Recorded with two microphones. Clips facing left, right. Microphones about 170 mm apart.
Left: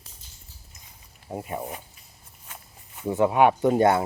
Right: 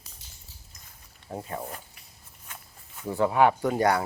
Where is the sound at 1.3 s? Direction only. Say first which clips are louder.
Left 3 dB; 15° left (ahead or behind).